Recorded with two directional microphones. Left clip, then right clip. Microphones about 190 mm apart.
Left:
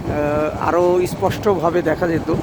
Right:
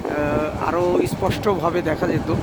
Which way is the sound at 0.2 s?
20° left (ahead or behind).